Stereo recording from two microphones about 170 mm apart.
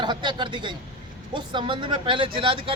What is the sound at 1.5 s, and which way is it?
Speech, 30° right (ahead or behind).